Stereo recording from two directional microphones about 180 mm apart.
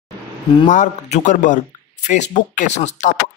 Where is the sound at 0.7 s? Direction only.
40° left (ahead or behind).